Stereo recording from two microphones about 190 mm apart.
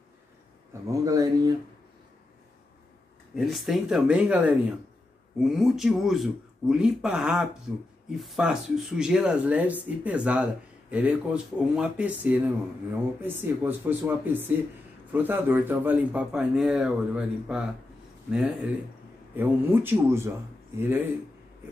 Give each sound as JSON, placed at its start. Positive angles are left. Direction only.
{"t": 0.8, "sound": "speech", "side_deg": -15}
{"t": 3.3, "sound": "speech", "side_deg": 0}